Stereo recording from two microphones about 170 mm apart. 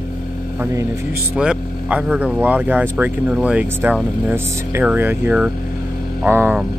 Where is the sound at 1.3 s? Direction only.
5° right (ahead or behind).